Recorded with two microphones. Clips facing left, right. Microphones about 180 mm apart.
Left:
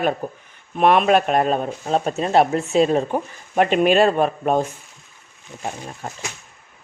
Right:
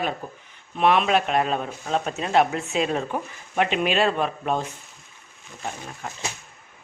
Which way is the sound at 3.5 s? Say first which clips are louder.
Left 6 dB; 45° left (ahead or behind).